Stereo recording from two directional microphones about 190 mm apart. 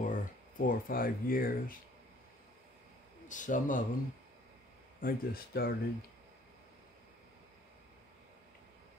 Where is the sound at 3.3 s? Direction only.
40° left (ahead or behind).